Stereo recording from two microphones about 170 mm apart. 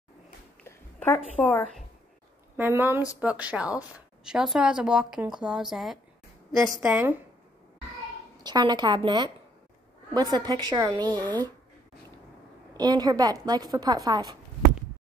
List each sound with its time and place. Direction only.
0.7 s a woman's voice: 15° left (ahead or behind)
2.5 s a woman's voice: 15° right (ahead or behind)
8.4 s a woman's voice: 25° right (ahead or behind)
12.7 s a woman's voice: 25° right (ahead or behind)